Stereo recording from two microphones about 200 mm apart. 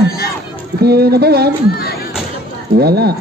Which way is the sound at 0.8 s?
50° right (ahead or behind).